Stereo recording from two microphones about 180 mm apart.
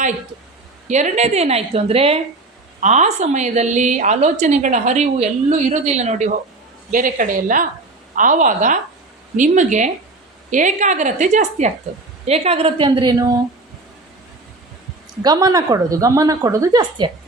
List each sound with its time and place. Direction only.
0.9 s a woman's voice: 40° right (ahead or behind); by 13.4 s 20° right (ahead or behind)
15.2 s a woman's voice: 20° right (ahead or behind)